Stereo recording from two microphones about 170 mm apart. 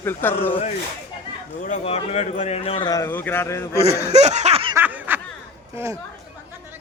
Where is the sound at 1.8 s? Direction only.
35° left (ahead or behind).